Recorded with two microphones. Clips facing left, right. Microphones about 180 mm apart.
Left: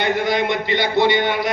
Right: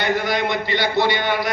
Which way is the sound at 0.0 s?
20° left (ahead or behind).